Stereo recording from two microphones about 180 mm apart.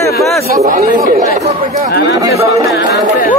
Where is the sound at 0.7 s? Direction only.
45° right (ahead or behind).